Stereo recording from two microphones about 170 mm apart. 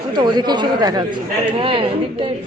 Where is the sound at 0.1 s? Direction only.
25° right (ahead or behind).